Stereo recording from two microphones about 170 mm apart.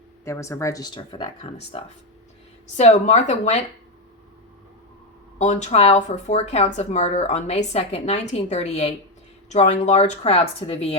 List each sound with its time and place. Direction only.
0.3 s speech: 15° left (ahead or behind); by 3.6 s 40° left (ahead or behind)
5.4 s speech: 45° left (ahead or behind)